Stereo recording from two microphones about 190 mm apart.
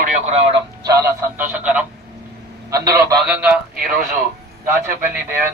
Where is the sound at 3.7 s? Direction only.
50° right (ahead or behind).